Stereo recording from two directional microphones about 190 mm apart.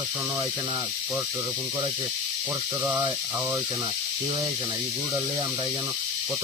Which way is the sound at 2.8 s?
20° right (ahead or behind).